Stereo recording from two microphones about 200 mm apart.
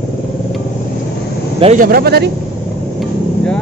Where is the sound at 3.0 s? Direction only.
5° left (ahead or behind).